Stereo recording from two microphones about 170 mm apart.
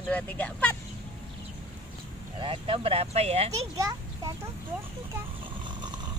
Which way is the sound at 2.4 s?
30° right (ahead or behind).